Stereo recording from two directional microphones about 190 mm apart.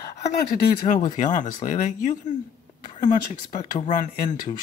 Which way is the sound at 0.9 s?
30° left (ahead or behind).